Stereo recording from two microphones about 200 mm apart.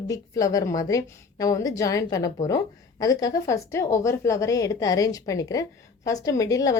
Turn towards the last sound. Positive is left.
turn(degrees=15)  # may be behind; listen again after turning